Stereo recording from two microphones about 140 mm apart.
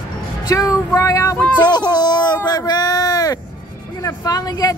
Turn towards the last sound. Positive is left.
turn(degrees=30)  # may be behind; listen again after turning